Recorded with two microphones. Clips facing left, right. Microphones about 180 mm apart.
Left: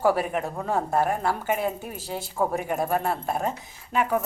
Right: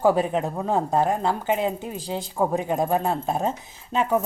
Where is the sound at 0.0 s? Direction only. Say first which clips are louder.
Right 3 dB; 20° right (ahead or behind).